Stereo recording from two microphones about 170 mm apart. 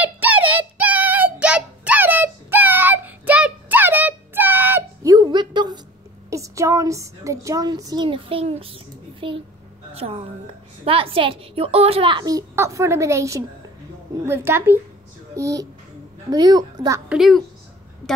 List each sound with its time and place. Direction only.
0.0 s child singing: 10° right (ahead or behind); by 5.8 s 25° right (ahead or behind)
6.3 s a woman's voice: 20° right (ahead or behind)
17.1 s a woman's voice: centre (ahead or behind)